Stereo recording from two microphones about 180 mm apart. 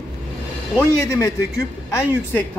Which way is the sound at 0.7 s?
15° left (ahead or behind).